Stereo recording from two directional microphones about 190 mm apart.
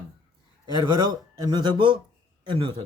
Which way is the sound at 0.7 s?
25° right (ahead or behind).